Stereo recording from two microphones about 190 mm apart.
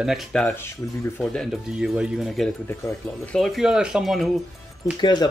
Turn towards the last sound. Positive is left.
turn(degrees=20)  # may be behind; listen again after turning